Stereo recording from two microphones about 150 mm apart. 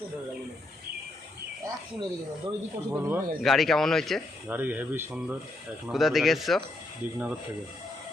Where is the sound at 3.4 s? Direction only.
Centre (ahead or behind).